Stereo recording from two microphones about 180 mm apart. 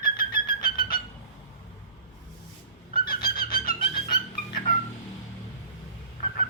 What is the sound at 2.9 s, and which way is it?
Bird, 55° left (ahead or behind).